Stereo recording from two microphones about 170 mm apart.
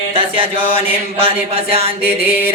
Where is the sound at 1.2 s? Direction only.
35° right (ahead or behind).